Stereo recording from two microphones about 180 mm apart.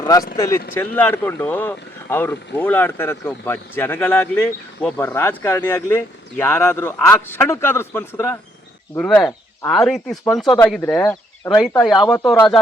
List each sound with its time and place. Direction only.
0.0 s speech: 20° left (ahead or behind); by 10.4 s centre (ahead or behind)
10.4 s speech: 15° left (ahead or behind)
10.7 s speech: 5° left (ahead or behind)